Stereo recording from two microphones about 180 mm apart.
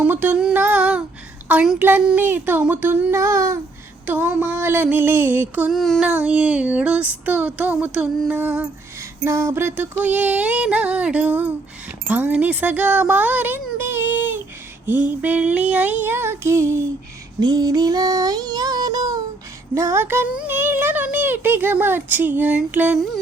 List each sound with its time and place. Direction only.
0.0 s music: 10° right (ahead or behind)
1.5 s child singing: 10° right (ahead or behind)
12.0 s speech: 10° right (ahead or behind)
14.8 s child singing: 10° right (ahead or behind)